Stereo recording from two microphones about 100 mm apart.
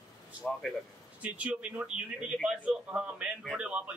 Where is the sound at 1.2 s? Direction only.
15° right (ahead or behind).